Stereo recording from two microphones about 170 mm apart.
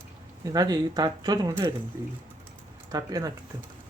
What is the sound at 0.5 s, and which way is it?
Speech, 25° right (ahead or behind).